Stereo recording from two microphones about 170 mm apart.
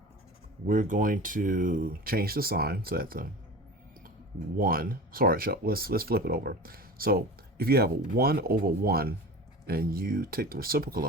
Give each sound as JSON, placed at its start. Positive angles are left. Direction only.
{"t": 0.7, "sound": "speech", "side_deg": -50}
{"t": 4.5, "sound": "speech", "side_deg": -60}